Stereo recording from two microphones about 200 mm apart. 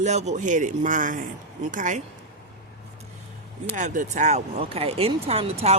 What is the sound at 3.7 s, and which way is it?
Speech, 40° right (ahead or behind).